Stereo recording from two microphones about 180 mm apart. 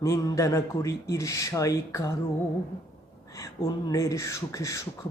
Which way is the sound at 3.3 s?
20° left (ahead or behind).